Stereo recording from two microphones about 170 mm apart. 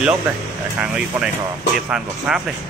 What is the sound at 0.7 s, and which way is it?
A man's voice, 5° right (ahead or behind).